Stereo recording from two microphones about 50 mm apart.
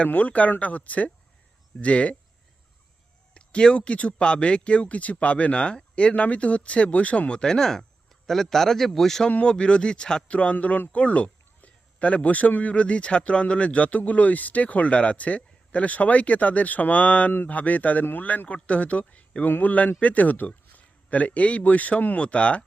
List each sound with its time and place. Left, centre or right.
0.0 s a man's voice: left
3.3 s a man's voice: centre
9.3 s a man's voice: left